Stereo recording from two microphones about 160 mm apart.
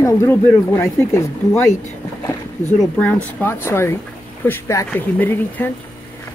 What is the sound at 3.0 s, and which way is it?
Speech, 10° left (ahead or behind).